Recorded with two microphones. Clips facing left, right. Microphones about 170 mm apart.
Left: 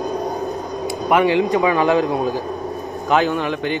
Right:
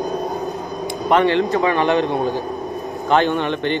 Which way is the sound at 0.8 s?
10° left (ahead or behind).